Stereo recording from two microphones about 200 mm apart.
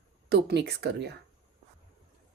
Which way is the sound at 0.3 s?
55° right (ahead or behind).